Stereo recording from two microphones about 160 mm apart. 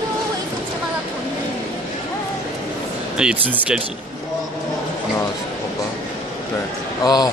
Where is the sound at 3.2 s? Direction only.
5° right (ahead or behind).